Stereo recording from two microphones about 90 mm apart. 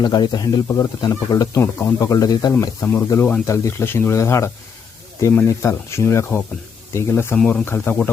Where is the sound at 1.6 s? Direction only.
30° left (ahead or behind); by 2.5 s 45° left (ahead or behind).